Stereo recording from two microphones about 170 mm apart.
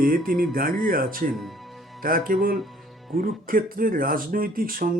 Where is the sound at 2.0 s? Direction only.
55° right (ahead or behind).